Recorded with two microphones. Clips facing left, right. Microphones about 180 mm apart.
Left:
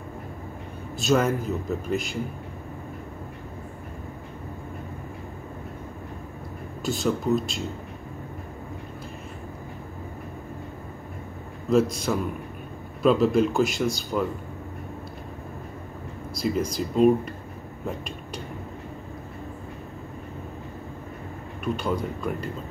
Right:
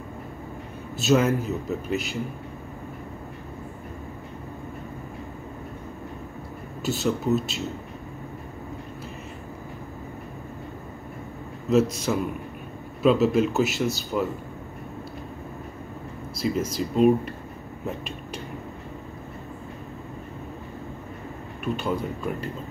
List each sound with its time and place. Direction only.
0.9 s a man's voice: 5° right (ahead or behind)
6.8 s a man's voice: 5° right (ahead or behind)
12.1 s a man's voice: 5° right (ahead or behind)
16.3 s a man's voice: 5° right (ahead or behind)
21.8 s a man's voice: 5° right (ahead or behind)